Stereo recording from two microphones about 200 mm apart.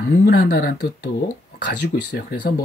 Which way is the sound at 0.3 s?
50° left (ahead or behind).